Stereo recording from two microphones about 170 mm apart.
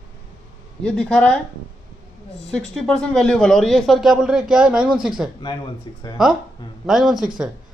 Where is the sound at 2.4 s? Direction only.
5° left (ahead or behind).